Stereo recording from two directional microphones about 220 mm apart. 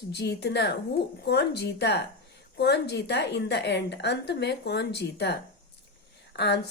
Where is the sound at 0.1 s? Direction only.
50° left (ahead or behind).